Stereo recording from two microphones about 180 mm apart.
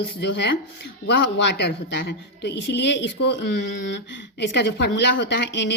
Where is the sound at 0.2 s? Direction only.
70° left (ahead or behind).